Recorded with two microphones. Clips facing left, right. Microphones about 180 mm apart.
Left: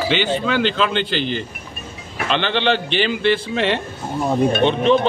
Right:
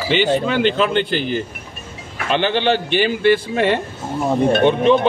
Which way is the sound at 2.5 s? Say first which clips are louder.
Right 2 dB; 45° right (ahead or behind).